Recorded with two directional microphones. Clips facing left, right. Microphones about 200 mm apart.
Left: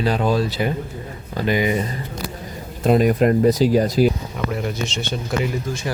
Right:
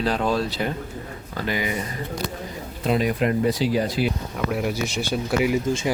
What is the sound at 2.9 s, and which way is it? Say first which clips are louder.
Speech: left 6 dB; 45° left (ahead or behind).